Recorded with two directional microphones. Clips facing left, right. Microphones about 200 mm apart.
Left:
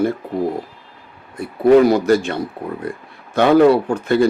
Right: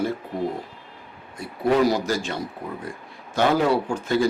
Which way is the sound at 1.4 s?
60° left (ahead or behind).